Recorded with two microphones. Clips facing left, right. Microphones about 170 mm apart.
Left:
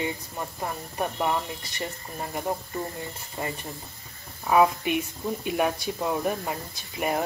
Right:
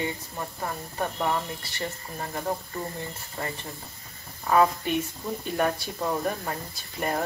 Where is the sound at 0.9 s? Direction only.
15° left (ahead or behind).